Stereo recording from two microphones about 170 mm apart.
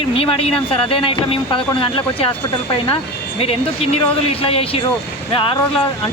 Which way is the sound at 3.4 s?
35° left (ahead or behind).